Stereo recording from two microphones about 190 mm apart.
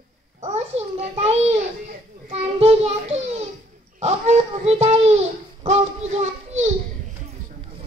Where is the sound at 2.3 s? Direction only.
30° right (ahead or behind).